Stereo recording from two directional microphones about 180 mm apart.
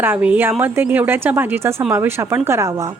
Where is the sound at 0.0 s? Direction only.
10° right (ahead or behind).